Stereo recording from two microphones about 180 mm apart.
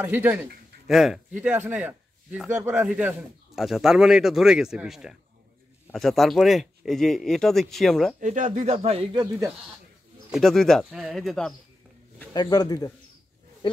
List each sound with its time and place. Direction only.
0.0 s a man's voice: 10° right (ahead or behind)
8.2 s speech: 45° right (ahead or behind); by 9.5 s 25° right (ahead or behind)
10.3 s speech: 5° left (ahead or behind)
12.4 s speech: 20° left (ahead or behind)